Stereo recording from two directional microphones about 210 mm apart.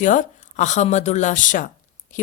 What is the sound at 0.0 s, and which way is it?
Speech, 35° left (ahead or behind).